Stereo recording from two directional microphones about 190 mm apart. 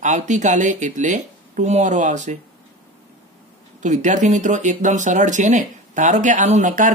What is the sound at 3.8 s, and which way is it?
Speech, 40° right (ahead or behind).